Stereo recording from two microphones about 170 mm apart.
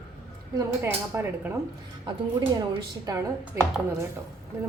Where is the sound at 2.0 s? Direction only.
25° right (ahead or behind).